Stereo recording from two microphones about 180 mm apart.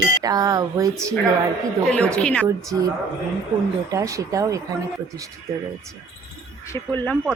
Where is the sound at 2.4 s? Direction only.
20° right (ahead or behind).